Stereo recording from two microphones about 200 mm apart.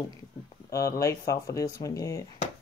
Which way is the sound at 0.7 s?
15° left (ahead or behind).